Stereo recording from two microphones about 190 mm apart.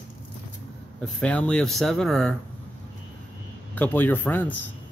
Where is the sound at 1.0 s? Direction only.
5° left (ahead or behind).